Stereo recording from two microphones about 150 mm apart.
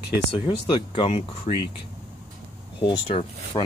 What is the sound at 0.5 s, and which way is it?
Speech, 35° left (ahead or behind).